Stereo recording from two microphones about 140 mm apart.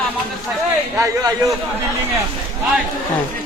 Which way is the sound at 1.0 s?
25° right (ahead or behind).